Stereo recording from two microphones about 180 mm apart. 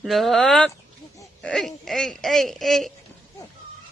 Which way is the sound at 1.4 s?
Centre (ahead or behind).